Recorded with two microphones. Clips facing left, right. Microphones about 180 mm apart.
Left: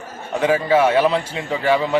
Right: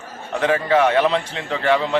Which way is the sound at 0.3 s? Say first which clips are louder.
Left 1 dB; 10° left (ahead or behind).